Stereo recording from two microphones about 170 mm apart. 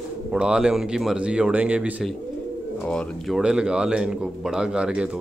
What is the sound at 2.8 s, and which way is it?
Speech, 5° left (ahead or behind).